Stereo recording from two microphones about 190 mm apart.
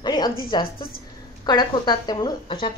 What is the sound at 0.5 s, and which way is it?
Speech, 25° left (ahead or behind).